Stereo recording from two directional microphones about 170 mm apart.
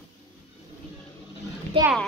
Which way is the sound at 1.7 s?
30° right (ahead or behind).